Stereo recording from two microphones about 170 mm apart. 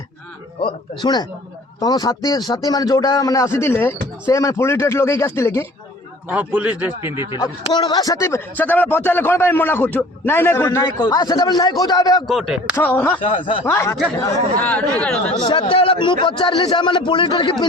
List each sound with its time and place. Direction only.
0.6 s a man's voice: 25° left (ahead or behind)
6.2 s a man's voice: 10° right (ahead or behind)
7.7 s speech: 25° left (ahead or behind)
12.3 s speech: centre (ahead or behind)
12.7 s speech: 10° left (ahead or behind)
13.4 s speech: 30° left (ahead or behind)
13.7 s speech: 15° left (ahead or behind)
15.4 s a man's voice: 25° left (ahead or behind)